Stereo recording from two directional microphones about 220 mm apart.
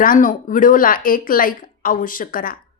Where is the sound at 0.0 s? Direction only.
40° left (ahead or behind).